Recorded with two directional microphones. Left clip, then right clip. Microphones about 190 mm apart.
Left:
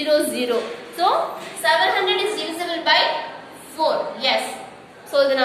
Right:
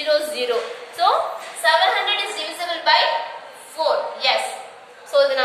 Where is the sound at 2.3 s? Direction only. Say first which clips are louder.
Even; 15° left (ahead or behind).